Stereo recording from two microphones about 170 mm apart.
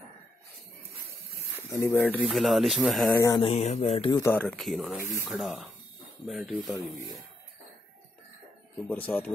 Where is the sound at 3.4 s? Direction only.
35° left (ahead or behind).